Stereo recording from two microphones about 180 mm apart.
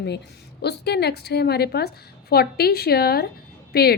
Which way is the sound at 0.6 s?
65° left (ahead or behind).